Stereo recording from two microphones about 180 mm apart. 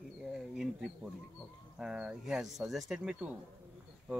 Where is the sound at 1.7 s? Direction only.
5° right (ahead or behind).